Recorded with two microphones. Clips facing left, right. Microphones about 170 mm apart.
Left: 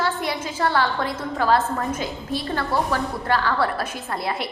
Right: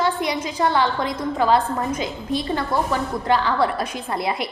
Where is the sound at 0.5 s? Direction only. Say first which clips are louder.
Right 2 dB; 20° right (ahead or behind).